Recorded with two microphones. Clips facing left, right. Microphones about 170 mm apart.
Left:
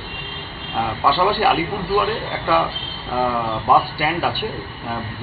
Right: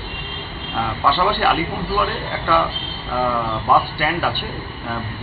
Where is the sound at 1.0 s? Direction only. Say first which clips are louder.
Left 1 dB; 10° left (ahead or behind).